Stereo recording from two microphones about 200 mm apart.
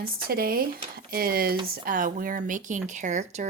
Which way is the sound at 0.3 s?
50° right (ahead or behind).